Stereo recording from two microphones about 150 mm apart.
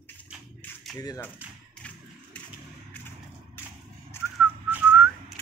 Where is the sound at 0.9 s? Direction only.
25° left (ahead or behind).